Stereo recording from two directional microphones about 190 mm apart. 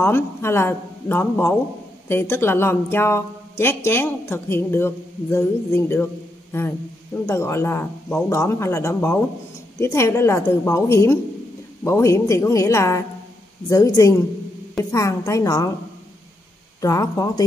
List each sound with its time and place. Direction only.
0.0 s speech: 15° left (ahead or behind)
16.8 s speech: 15° left (ahead or behind)